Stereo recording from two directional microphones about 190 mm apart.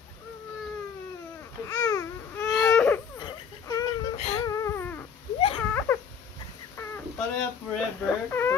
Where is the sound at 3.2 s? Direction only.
20° left (ahead or behind).